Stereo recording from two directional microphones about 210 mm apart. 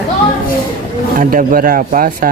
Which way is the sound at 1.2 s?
40° right (ahead or behind).